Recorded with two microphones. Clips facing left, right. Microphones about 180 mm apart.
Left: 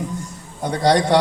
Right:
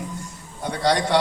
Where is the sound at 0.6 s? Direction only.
45° left (ahead or behind).